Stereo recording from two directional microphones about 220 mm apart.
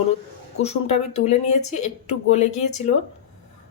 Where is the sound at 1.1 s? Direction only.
30° left (ahead or behind).